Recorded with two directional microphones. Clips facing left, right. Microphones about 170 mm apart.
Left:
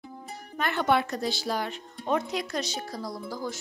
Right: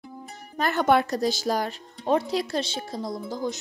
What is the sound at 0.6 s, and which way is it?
Speech, 40° right (ahead or behind).